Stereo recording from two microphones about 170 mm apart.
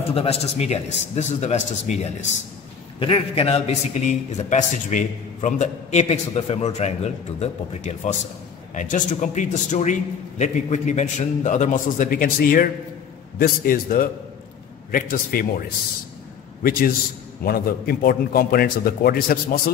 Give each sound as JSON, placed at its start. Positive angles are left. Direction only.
{"t": 0.1, "sound": "a man's voice", "side_deg": 35}
{"t": 17.4, "sound": "a man's voice", "side_deg": 60}